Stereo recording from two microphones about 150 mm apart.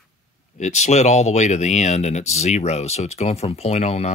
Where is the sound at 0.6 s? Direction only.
50° left (ahead or behind).